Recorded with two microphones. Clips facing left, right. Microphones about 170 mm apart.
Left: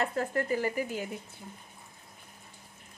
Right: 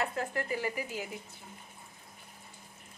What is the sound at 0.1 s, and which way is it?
Speech, 40° left (ahead or behind).